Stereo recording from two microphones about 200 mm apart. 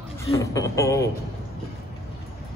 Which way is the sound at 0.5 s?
15° left (ahead or behind).